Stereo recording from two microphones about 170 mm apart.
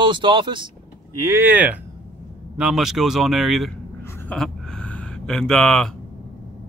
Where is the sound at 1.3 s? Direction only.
10° right (ahead or behind).